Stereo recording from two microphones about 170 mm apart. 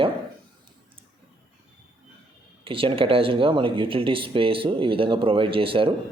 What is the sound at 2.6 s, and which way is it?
Speech, 30° right (ahead or behind).